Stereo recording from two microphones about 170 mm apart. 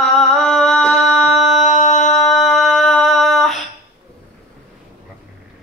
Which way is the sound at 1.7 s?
45° left (ahead or behind).